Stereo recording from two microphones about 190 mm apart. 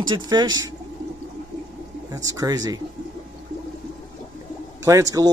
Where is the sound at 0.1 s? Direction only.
20° right (ahead or behind).